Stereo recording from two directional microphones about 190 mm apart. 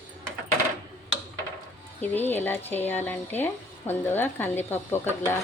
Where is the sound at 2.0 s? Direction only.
10° left (ahead or behind).